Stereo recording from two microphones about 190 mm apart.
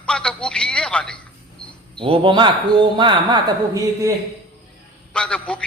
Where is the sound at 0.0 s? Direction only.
5° left (ahead or behind).